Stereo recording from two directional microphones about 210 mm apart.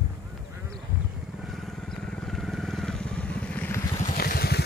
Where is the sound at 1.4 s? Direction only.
Centre (ahead or behind).